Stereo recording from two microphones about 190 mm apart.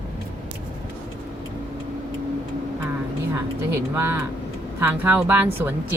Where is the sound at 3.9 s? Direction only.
15° right (ahead or behind).